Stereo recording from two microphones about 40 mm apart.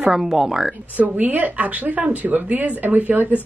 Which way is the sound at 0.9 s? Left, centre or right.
Right.